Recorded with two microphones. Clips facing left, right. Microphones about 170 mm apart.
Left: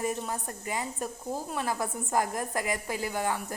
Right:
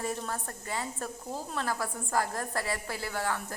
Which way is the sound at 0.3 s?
15° left (ahead or behind).